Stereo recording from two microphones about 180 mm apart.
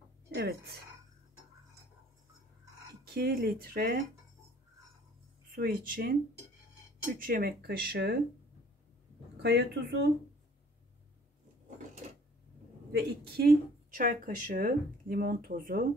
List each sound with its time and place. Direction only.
0.3 s speech: 60° right (ahead or behind)
3.1 s speech: 55° right (ahead or behind)
5.5 s speech: 50° right (ahead or behind)
7.2 s speech: 55° right (ahead or behind)
9.4 s speech: 70° right (ahead or behind)
12.9 s speech: 60° right (ahead or behind)